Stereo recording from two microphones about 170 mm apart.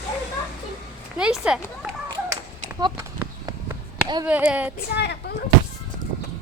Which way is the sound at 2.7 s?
25° right (ahead or behind).